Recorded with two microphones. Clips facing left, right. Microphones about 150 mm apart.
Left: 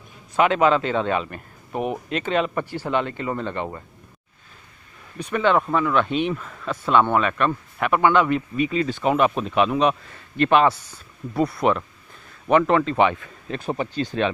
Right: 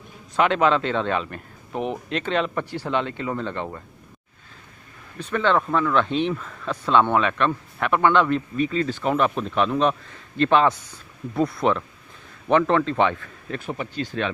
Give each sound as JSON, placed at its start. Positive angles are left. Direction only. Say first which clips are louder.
{"t": 0.4, "sound": "speech", "louder": "left 1 dB", "side_deg": 5}
{"t": 5.2, "sound": "speech", "louder": "left 1 dB", "side_deg": 10}
{"t": 13.5, "sound": "speech", "louder": "left 3 dB", "side_deg": 30}